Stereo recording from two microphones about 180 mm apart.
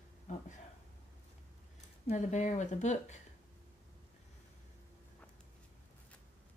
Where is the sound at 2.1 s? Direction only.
40° left (ahead or behind).